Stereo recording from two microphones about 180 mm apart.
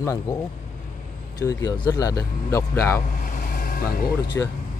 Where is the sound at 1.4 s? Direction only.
20° left (ahead or behind).